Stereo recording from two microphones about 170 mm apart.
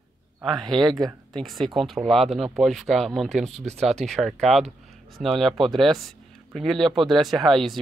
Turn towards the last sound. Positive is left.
turn(degrees=0)  # may be behind; listen again after turning